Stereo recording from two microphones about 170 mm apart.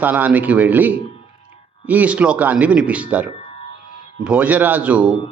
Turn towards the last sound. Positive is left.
turn(degrees=-10)  # may be behind; listen again after turning